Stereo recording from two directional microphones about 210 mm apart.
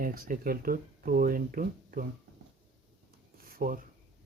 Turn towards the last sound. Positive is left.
turn(degrees=-40)  # may be behind; listen again after turning